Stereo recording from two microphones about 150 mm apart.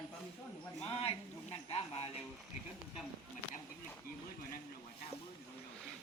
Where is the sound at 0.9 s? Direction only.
40° left (ahead or behind).